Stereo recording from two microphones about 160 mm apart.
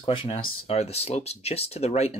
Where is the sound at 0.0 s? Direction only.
35° left (ahead or behind).